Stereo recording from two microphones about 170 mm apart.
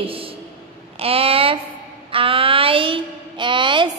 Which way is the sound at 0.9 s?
35° right (ahead or behind).